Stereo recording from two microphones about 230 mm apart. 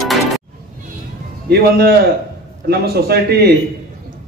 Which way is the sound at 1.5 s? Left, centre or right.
Right.